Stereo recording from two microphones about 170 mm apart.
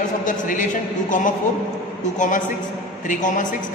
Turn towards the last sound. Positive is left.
turn(degrees=50)  # may be behind; listen again after turning